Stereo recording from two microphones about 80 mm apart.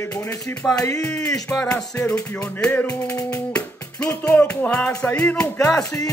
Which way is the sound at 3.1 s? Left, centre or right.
Left.